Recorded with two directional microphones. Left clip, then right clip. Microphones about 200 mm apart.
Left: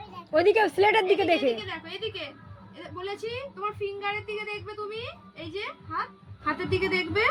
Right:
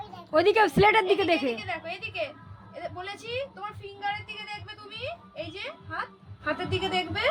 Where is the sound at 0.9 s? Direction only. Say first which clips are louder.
Even; 10° right (ahead or behind).